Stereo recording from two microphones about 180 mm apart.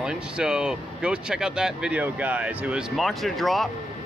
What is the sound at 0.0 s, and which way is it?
Speech, 5° right (ahead or behind).